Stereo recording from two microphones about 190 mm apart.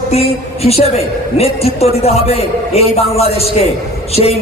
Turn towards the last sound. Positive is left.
turn(degrees=30)  # may be behind; listen again after turning